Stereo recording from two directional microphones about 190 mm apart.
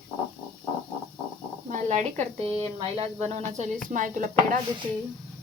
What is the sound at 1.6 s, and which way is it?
Snake, 40° right (ahead or behind).